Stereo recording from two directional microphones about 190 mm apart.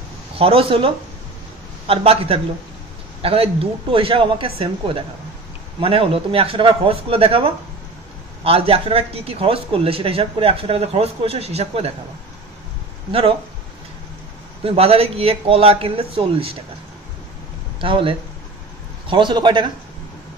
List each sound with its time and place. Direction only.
0.4 s a man's voice: 30° right (ahead or behind)
14.6 s speech: 30° right (ahead or behind)
17.7 s speech: 25° right (ahead or behind)